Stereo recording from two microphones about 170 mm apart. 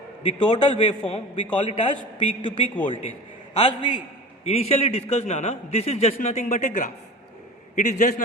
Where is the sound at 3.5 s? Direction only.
35° left (ahead or behind).